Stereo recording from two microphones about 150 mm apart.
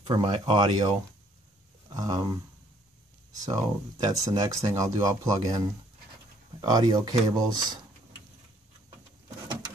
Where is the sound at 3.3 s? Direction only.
25° right (ahead or behind).